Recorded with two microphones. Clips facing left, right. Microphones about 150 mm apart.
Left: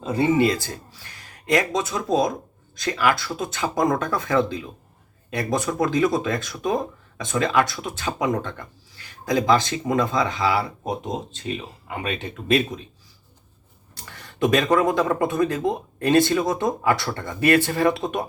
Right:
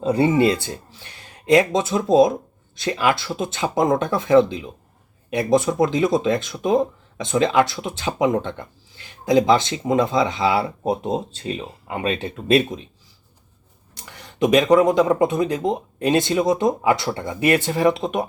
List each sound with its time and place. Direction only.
0.1 s speech: 30° right (ahead or behind)
13.9 s speech: 15° right (ahead or behind)